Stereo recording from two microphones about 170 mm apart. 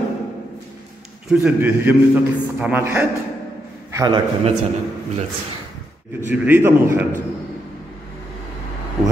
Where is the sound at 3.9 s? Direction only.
25° right (ahead or behind).